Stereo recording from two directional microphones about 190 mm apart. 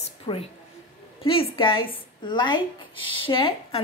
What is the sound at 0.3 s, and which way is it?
A woman's voice, 25° left (ahead or behind).